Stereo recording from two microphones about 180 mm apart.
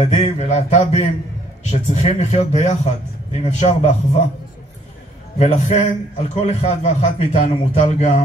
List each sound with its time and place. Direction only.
0.0 s a man's voice: 35° left (ahead or behind)
5.4 s a man's voice: 35° left (ahead or behind)